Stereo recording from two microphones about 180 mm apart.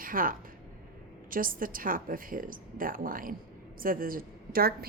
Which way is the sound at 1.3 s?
50° right (ahead or behind).